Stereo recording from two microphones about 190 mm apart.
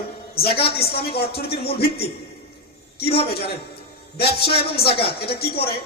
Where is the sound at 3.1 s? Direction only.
30° left (ahead or behind).